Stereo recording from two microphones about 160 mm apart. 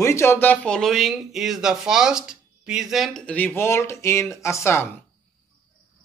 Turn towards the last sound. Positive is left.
turn(degrees=15)  # may be behind; listen again after turning